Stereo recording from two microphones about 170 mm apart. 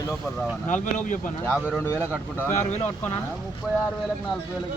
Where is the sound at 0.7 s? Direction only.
50° left (ahead or behind).